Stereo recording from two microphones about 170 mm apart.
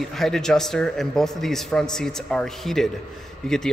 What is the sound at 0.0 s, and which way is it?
A man's voice, centre (ahead or behind).